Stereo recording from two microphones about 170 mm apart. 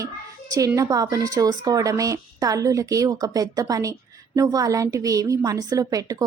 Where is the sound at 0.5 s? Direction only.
20° right (ahead or behind).